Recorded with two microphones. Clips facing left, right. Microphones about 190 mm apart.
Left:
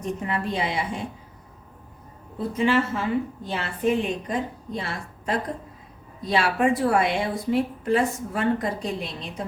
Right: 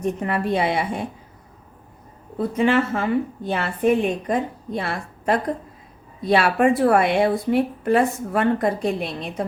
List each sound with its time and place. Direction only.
0.0 s speech: 60° right (ahead or behind)
2.6 s speech: 60° right (ahead or behind)